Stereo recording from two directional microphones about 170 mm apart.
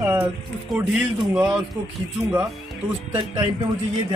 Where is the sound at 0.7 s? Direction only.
5° right (ahead or behind).